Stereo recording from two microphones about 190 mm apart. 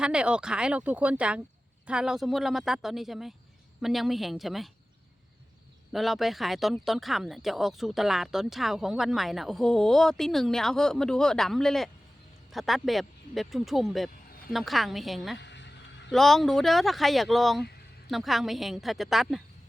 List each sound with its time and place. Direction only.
0.0 s speech: 5° right (ahead or behind)
5.9 s speech: centre (ahead or behind)
15.4 s a sound: 65° left (ahead or behind)
16.0 s speech: centre (ahead or behind)